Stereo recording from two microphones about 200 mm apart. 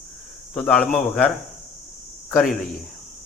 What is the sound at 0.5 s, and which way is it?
Speech, 5° left (ahead or behind).